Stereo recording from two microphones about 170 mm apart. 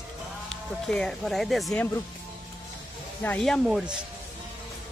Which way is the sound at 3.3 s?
5° left (ahead or behind).